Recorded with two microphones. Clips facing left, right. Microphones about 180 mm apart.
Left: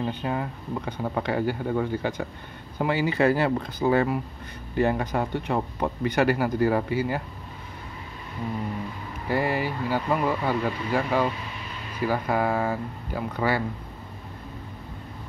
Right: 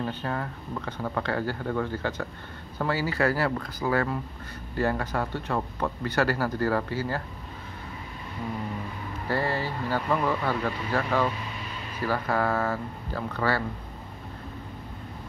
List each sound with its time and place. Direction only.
0.0 s speech: 15° left (ahead or behind)
9.3 s speech: 15° left (ahead or behind)